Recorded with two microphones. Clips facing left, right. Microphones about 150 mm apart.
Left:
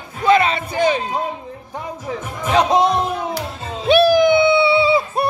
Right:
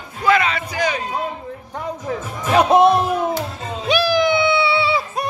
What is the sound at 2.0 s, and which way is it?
Music, 5° right (ahead or behind).